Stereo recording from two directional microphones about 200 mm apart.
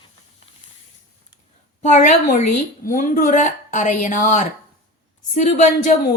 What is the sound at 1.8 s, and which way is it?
A woman's voice, 35° left (ahead or behind).